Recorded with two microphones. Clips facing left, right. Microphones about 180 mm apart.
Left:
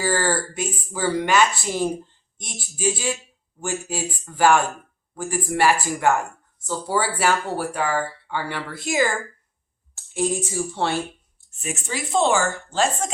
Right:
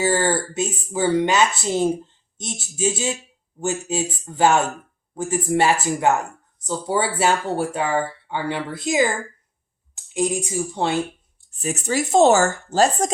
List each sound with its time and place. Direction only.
0.0 s a woman's voice: 20° right (ahead or behind)
11.5 s speech: 35° right (ahead or behind)